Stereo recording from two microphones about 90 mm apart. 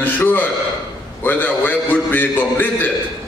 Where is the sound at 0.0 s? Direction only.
20° left (ahead or behind).